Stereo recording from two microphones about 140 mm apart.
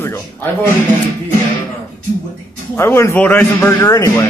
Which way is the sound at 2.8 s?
15° left (ahead or behind).